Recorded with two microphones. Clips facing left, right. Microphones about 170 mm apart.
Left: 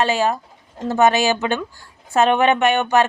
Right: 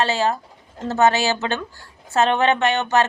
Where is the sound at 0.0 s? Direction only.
15° left (ahead or behind).